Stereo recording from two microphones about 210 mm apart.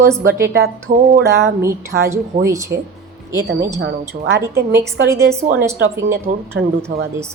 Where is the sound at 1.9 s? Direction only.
55° right (ahead or behind).